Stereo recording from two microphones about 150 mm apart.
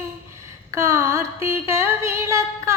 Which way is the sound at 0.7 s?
20° right (ahead or behind).